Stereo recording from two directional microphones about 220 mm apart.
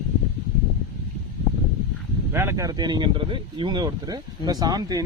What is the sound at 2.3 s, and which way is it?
Speech, 10° right (ahead or behind).